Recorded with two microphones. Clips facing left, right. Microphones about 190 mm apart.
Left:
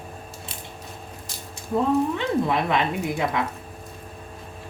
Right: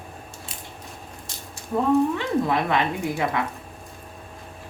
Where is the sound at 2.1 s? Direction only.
20° left (ahead or behind).